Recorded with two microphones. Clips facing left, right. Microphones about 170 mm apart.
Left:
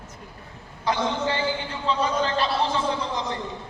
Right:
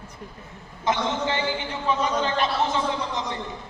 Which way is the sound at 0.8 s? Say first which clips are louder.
Even; 20° right (ahead or behind).